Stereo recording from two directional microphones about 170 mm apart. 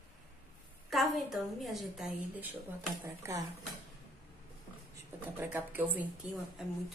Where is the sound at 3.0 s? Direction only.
15° right (ahead or behind).